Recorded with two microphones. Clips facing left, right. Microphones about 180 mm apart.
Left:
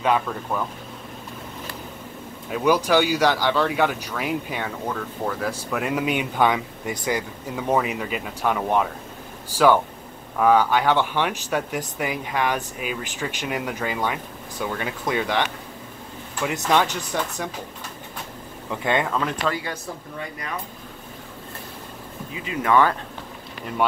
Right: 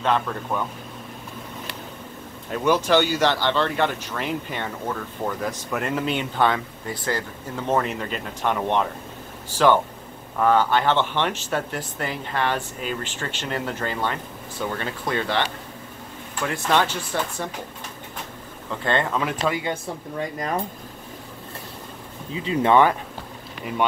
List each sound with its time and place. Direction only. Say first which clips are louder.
0.0 s speech: left 1 dB; 5° left (ahead or behind)
2.5 s speech: even; 10° left (ahead or behind)
10.4 s speech: left 1 dB; 10° left (ahead or behind)
16.8 s speech: even; 15° left (ahead or behind)
18.7 s speech: left 1 dB; 15° left (ahead or behind)
19.0 s speech: even; 5° right (ahead or behind)
19.4 s speech: right 2 dB; 20° right (ahead or behind)
20.2 s speech: right 8 dB; 40° right (ahead or behind)
22.3 s speech: right 3 dB; 30° right (ahead or behind)